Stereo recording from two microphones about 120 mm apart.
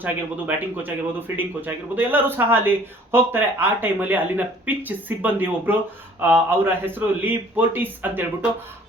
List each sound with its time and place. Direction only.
0.0 s speech: 15° right (ahead or behind)